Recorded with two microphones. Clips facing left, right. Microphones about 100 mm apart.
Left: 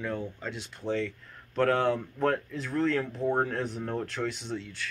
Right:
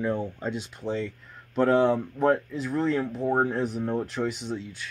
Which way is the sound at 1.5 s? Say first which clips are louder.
Right 4 dB; 15° right (ahead or behind).